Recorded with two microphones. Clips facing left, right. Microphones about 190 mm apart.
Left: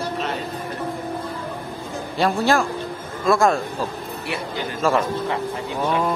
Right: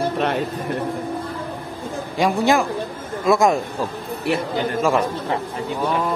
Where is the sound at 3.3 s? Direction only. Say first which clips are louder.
Right 1 dB; 20° right (ahead or behind).